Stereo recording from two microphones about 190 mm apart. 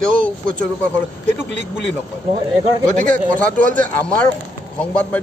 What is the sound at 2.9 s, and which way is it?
Speech, 45° right (ahead or behind).